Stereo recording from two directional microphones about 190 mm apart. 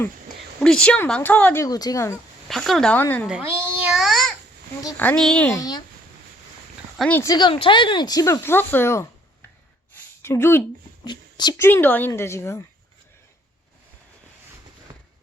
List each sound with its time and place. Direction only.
0.6 s a woman's voice: 5° left (ahead or behind)
1.6 s speech: 20° left (ahead or behind)
2.5 s speech: centre (ahead or behind)
3.2 s babbling: 10° right (ahead or behind)
4.9 s a woman's voice: 5° left (ahead or behind)
5.5 s speech: 20° left (ahead or behind)
6.9 s speech: centre (ahead or behind)
7.2 s speech: 20° left (ahead or behind)
9.9 s a sound: 10° left (ahead or behind)
11.0 s a woman's voice: 25° left (ahead or behind)